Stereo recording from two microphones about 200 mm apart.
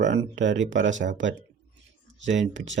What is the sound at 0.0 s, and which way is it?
Speech, 65° right (ahead or behind).